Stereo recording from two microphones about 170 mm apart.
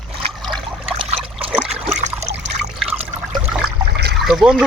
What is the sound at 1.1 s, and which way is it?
Trickle, 35° right (ahead or behind).